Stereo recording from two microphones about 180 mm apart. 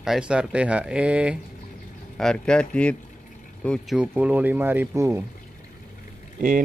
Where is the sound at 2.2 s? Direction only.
5° left (ahead or behind); by 5.2 s 15° right (ahead or behind).